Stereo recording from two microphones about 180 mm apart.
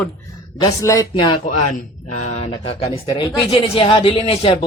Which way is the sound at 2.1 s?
40° left (ahead or behind).